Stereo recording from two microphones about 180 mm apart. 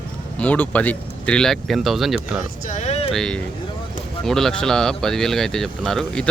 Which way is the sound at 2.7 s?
40° left (ahead or behind).